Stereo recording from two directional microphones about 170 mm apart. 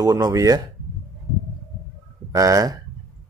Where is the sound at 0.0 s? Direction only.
20° right (ahead or behind).